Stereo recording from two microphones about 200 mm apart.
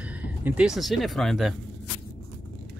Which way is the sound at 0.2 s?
10° right (ahead or behind).